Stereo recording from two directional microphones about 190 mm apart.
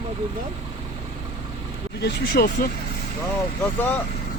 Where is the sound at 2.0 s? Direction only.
55° left (ahead or behind).